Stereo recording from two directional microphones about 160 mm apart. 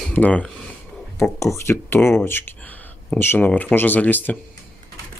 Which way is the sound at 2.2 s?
15° left (ahead or behind).